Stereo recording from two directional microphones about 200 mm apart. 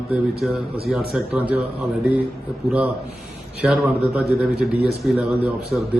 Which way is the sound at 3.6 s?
Centre (ahead or behind).